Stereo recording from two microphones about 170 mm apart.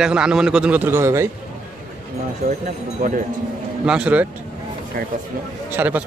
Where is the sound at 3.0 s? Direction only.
45° right (ahead or behind).